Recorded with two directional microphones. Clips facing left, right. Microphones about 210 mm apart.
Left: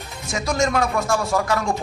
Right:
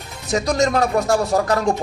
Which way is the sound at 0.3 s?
40° right (ahead or behind).